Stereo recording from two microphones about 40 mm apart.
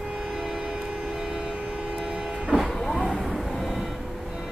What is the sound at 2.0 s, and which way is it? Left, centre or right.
Power windows, centre.